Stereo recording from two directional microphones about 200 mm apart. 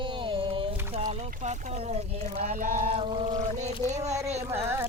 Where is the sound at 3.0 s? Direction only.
25° right (ahead or behind).